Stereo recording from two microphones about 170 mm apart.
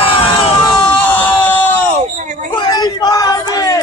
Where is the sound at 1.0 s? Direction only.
10° left (ahead or behind).